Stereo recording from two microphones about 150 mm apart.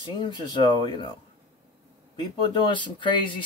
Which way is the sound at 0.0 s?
30° left (ahead or behind).